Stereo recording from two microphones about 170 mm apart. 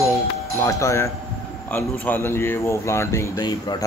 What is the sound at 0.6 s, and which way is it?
Speech, 15° left (ahead or behind).